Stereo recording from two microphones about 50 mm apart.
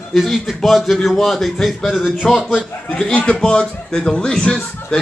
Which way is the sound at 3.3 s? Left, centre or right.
Centre.